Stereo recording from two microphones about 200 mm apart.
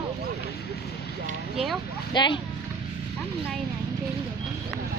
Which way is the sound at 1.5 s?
Centre (ahead or behind).